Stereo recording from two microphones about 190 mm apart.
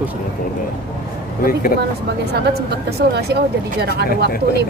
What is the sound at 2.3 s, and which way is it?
A woman's voice, 55° right (ahead or behind).